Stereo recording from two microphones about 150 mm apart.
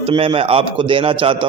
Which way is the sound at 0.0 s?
35° right (ahead or behind).